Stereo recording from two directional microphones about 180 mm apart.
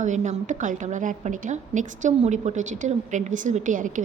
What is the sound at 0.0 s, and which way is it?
A woman's voice, 40° right (ahead or behind).